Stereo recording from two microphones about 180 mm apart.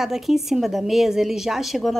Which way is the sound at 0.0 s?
Centre (ahead or behind).